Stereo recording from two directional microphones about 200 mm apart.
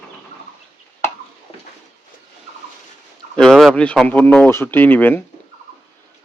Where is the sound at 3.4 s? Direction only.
Centre (ahead or behind).